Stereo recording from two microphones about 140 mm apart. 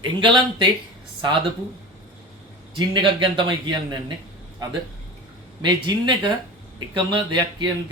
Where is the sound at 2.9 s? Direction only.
35° right (ahead or behind).